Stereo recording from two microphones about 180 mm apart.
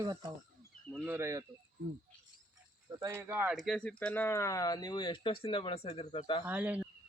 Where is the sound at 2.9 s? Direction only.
20° right (ahead or behind).